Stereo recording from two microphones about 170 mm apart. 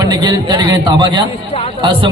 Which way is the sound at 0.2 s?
25° right (ahead or behind).